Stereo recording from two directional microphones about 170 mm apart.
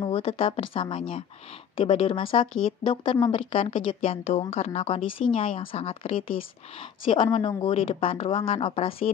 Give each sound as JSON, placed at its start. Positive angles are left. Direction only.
{"t": 0.0, "sound": "speech", "side_deg": 35}